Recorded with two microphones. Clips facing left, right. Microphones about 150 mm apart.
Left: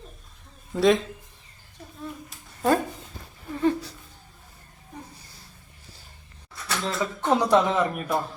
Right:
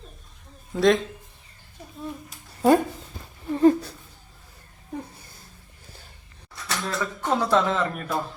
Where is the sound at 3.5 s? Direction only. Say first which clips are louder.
Right 6 dB; 40° right (ahead or behind).